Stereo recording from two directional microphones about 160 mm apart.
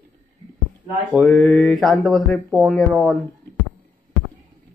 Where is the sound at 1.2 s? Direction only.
Centre (ahead or behind).